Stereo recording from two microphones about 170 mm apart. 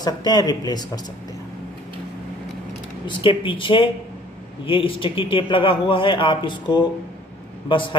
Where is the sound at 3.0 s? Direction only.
30° left (ahead or behind).